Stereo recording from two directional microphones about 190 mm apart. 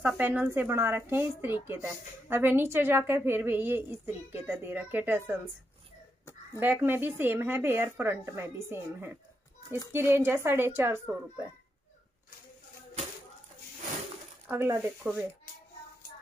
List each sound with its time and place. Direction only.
0.0 s a woman's voice: 10° right (ahead or behind)
6.6 s a woman's voice: 10° right (ahead or behind)
14.5 s a woman's voice: 15° right (ahead or behind)